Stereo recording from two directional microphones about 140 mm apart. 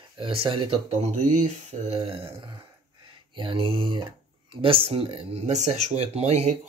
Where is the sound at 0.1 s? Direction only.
40° right (ahead or behind).